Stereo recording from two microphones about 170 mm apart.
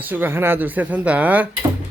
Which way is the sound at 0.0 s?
10° right (ahead or behind).